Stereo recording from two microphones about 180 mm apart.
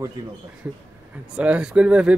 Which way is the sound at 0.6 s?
10° right (ahead or behind).